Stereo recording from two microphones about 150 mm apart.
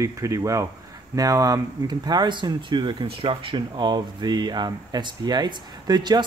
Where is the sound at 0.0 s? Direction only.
20° right (ahead or behind).